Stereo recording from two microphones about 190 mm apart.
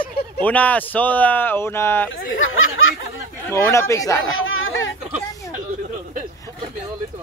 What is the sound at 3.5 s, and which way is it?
Speech, 15° left (ahead or behind).